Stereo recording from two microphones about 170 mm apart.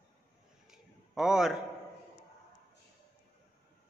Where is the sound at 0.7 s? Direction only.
5° right (ahead or behind).